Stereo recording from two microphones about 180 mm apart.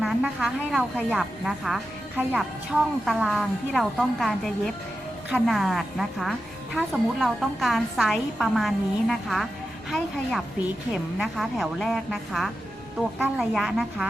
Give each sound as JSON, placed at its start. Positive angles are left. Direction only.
{"t": 0.0, "sound": "a woman's voice", "side_deg": 0}
{"t": 10.9, "sound": "a woman's voice", "side_deg": 0}